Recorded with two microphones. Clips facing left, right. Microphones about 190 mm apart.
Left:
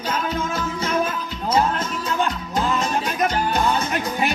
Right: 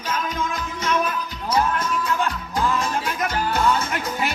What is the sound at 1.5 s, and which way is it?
Music, 25° left (ahead or behind).